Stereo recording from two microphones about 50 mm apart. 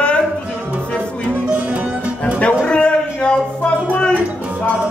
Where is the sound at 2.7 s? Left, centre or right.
Left.